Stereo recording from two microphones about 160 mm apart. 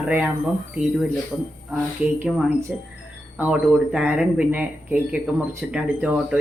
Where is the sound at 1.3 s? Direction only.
5° right (ahead or behind).